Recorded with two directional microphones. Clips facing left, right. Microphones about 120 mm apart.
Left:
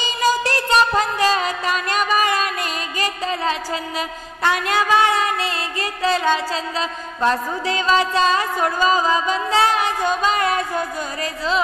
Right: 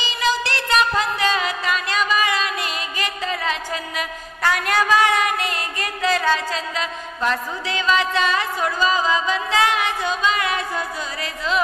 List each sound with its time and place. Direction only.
0.0 s music: 40° left (ahead or behind)
3.0 s music: 35° left (ahead or behind)
4.4 s a sound: 20° left (ahead or behind)
8.5 s music: 45° left (ahead or behind)